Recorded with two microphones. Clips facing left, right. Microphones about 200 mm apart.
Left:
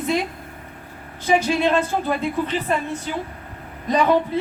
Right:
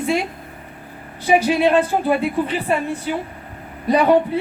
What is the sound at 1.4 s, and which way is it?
A woman's voice, 15° right (ahead or behind).